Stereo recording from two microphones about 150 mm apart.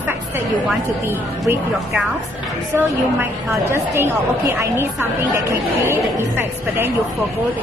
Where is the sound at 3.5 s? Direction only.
20° right (ahead or behind).